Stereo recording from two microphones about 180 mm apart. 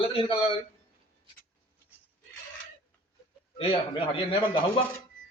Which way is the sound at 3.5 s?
30° left (ahead or behind).